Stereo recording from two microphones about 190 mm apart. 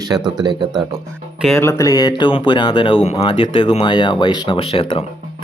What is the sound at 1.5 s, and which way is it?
Speech, 15° left (ahead or behind).